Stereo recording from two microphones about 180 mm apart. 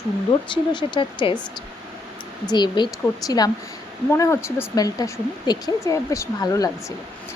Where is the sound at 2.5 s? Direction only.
25° left (ahead or behind).